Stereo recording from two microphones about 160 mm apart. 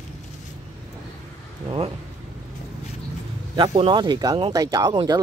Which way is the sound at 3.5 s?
30° right (ahead or behind).